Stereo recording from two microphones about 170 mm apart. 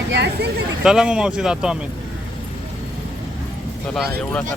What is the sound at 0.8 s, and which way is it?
Speech, 5° right (ahead or behind).